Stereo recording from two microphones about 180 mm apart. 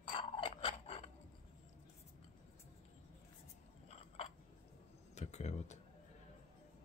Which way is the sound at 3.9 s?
35° left (ahead or behind).